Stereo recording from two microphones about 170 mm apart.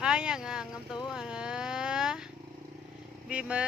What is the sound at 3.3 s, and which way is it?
Speech, 5° right (ahead or behind).